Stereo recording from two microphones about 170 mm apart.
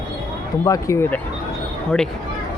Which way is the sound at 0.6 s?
15° left (ahead or behind).